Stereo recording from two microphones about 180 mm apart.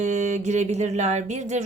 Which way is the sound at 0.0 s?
40° right (ahead or behind).